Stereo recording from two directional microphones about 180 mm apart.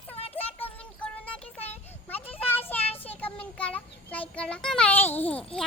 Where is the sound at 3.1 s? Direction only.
10° left (ahead or behind).